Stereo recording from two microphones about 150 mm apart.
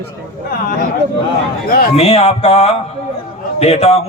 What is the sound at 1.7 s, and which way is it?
Speech, 75° left (ahead or behind).